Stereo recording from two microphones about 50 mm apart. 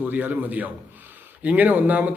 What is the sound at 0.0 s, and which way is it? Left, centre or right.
Speech, right.